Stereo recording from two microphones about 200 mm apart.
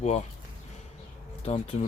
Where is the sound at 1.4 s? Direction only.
30° left (ahead or behind).